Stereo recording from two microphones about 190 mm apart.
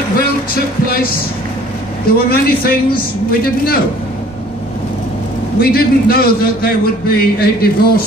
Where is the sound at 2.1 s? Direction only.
50° left (ahead or behind).